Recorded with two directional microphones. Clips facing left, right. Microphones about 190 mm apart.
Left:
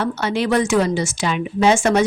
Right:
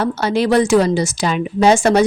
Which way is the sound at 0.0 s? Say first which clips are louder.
Right 4 dB; 35° right (ahead or behind).